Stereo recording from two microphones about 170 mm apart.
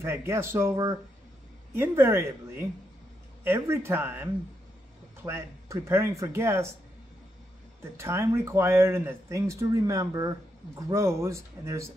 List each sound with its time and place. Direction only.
0.0 s speech: 15° right (ahead or behind)
8.0 s speech: 15° right (ahead or behind)